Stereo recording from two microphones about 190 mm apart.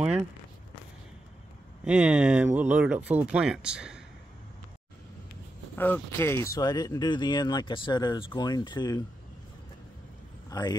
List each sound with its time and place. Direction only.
1.9 s speech: 5° right (ahead or behind)
5.8 s speech: 10° left (ahead or behind)
10.5 s speech: 20° left (ahead or behind)